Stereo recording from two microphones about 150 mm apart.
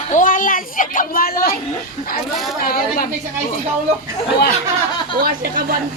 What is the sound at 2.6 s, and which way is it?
Speech, 80° left.